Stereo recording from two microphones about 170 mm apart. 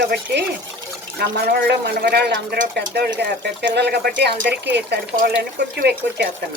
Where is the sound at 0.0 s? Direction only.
75° right (ahead or behind).